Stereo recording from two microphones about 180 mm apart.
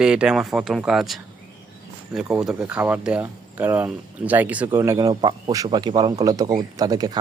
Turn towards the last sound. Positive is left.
turn(degrees=-20)  # may be behind; listen again after turning